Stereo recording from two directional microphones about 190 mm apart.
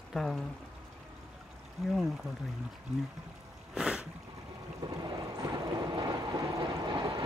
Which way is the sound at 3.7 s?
5° right (ahead or behind).